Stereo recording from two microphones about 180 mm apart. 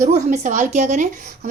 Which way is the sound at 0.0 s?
45° right (ahead or behind).